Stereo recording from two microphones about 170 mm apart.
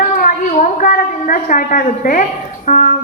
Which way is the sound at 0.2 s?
50° left (ahead or behind).